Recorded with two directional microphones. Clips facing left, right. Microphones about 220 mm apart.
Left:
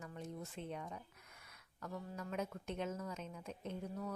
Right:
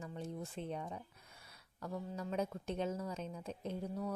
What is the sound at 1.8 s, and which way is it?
A woman's voice, 30° right (ahead or behind).